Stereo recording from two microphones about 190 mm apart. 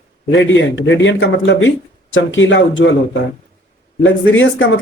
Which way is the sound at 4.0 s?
80° left.